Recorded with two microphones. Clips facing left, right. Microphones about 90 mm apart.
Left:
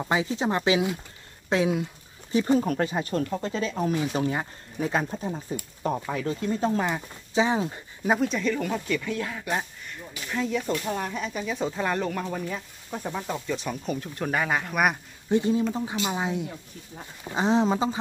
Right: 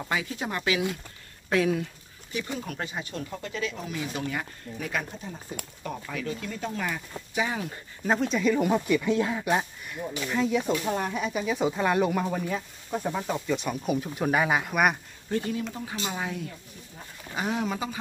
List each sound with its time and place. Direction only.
0.0 s speech: 25° left (ahead or behind)
2.3 s speech: 40° left (ahead or behind)
3.3 s speech: 35° left (ahead or behind)
8.0 s speech: 5° left (ahead or behind)
8.5 s speech: 15° right (ahead or behind)
9.5 s speech: 5° right (ahead or behind)
15.2 s speech: 20° left (ahead or behind)